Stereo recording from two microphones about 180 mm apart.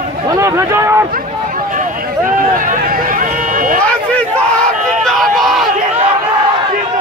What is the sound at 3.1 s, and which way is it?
Run, 50° right (ahead or behind).